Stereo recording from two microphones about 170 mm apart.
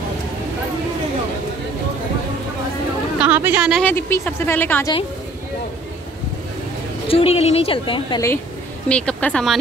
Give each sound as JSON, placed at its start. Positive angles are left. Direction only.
{"t": 3.2, "sound": "speech", "side_deg": -10}
{"t": 3.8, "sound": "speech", "side_deg": 15}
{"t": 7.1, "sound": "a woman's voice", "side_deg": 35}
{"t": 8.8, "sound": "speech", "side_deg": 5}